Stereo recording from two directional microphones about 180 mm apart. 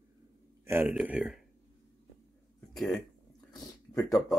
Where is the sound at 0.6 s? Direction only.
10° right (ahead or behind).